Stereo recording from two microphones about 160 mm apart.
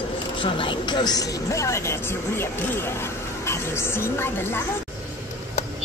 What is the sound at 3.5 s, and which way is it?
A woman's voice, 15° left (ahead or behind).